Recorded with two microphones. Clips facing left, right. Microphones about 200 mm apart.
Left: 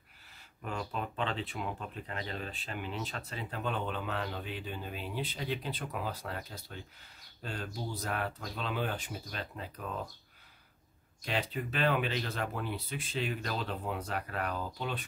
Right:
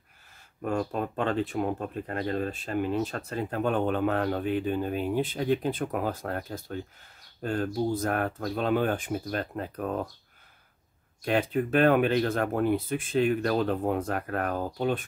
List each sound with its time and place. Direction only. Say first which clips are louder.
0.6 s speech: right 9 dB; 45° right (ahead or behind)
11.2 s speech: right 9 dB; 50° right (ahead or behind)